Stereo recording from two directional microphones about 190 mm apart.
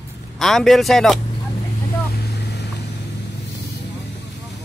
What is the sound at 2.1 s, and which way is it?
Vehicle, 60° left (ahead or behind).